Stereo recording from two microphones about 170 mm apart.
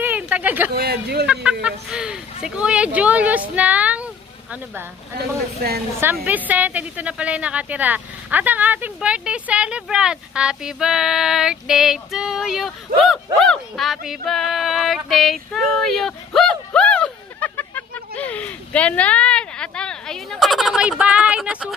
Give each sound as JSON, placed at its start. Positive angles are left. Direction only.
{"t": 0.0, "sound": "a sound", "side_deg": -10}
{"t": 0.7, "sound": "a woman's voice", "side_deg": -70}
{"t": 1.2, "sound": "speech", "side_deg": -5}
{"t": 5.9, "sound": "a woman's voice", "side_deg": -10}